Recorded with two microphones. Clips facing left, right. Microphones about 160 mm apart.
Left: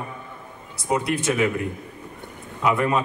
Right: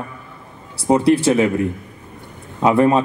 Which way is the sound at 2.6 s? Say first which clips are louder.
Right 7 dB; 35° right (ahead or behind).